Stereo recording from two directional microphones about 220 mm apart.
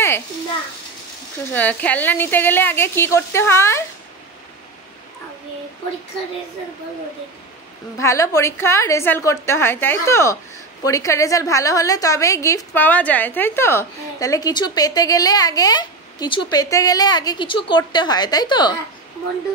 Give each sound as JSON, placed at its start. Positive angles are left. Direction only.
{"t": 1.5, "sound": "a woman's voice", "side_deg": 5}
{"t": 8.0, "sound": "a woman's voice", "side_deg": 15}